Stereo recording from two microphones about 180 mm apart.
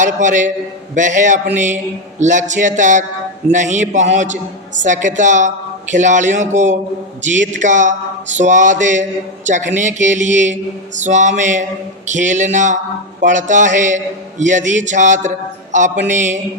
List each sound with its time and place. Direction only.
0.0 s a man's voice: 45° right (ahead or behind)